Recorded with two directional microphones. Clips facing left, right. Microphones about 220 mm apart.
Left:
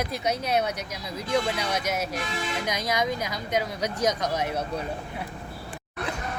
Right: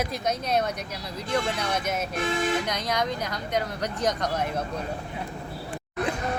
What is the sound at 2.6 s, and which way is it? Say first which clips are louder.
Speech: left 1 dB; 10° left (ahead or behind).